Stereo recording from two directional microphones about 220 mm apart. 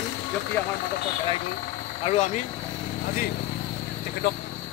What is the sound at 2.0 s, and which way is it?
Speech, 30° left (ahead or behind).